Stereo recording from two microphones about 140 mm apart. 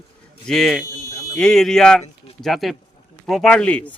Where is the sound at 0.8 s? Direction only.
20° left (ahead or behind).